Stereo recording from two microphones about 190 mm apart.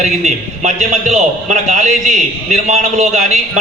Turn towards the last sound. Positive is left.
turn(degrees=-40)  # may be behind; listen again after turning